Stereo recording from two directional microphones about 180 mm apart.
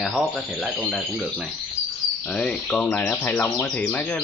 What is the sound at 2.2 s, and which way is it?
Speech, 5° left (ahead or behind).